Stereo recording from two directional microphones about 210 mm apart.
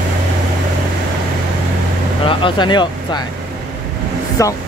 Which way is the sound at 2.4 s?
20° left (ahead or behind).